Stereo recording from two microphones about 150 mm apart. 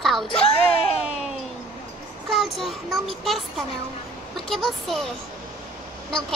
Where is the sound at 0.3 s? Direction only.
40° left (ahead or behind).